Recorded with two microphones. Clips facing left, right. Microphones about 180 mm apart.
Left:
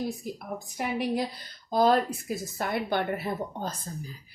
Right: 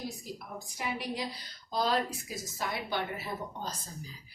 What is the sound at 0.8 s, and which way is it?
Speech, 55° left (ahead or behind).